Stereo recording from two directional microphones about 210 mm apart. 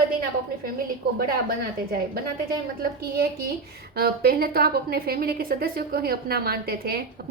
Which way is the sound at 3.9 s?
45° right (ahead or behind).